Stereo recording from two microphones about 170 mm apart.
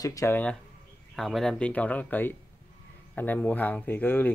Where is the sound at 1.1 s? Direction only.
Centre (ahead or behind).